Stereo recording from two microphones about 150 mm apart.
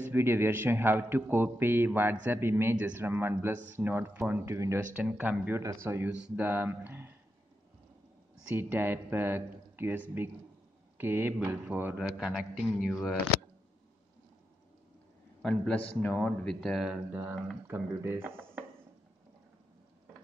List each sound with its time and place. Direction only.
0.0 s a man's voice: 15° right (ahead or behind)
8.5 s a man's voice: 15° right (ahead or behind); by 13.2 s centre (ahead or behind)
15.4 s a man's voice: 10° left (ahead or behind)
17.6 s speech: 15° right (ahead or behind)